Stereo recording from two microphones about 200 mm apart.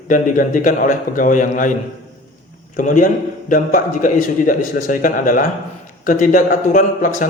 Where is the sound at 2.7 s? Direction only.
40° left (ahead or behind).